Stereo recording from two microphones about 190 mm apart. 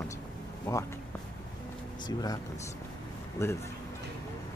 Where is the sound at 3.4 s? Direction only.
15° left (ahead or behind).